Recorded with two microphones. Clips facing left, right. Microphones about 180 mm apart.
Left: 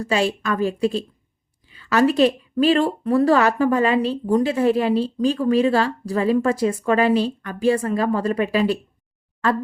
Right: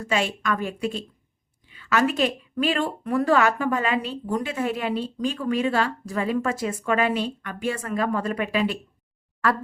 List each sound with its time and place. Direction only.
0.0 s speech: 35° left (ahead or behind)
9.4 s speech: 25° left (ahead or behind)